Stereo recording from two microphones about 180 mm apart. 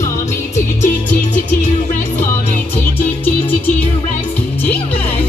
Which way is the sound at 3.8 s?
35° left (ahead or behind).